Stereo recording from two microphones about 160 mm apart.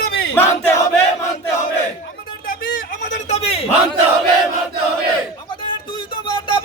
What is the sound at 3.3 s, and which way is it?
Speech, 40° left (ahead or behind).